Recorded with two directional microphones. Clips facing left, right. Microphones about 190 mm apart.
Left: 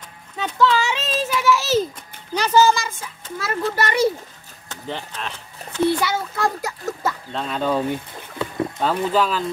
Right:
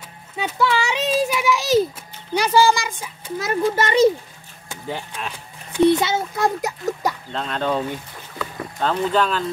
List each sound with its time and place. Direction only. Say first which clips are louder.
0.4 s a sound: left 2 dB; 10° right (ahead or behind)
2.3 s speech: even; 10° right (ahead or behind)
4.6 s a child's voice: right 1 dB; 10° right (ahead or behind)
7.3 s speech: left 2 dB; 5° left (ahead or behind)
8.8 s speech: right 1 dB; 5° left (ahead or behind)